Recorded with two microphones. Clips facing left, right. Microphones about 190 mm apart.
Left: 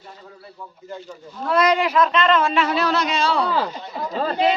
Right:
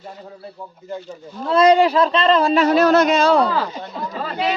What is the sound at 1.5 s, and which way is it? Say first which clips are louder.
Speech: right 5 dB; 30° right (ahead or behind).